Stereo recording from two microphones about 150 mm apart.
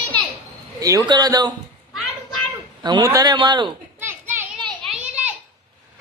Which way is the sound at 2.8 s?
25° right (ahead or behind).